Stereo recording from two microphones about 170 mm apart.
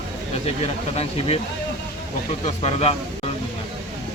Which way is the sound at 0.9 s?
35° left (ahead or behind).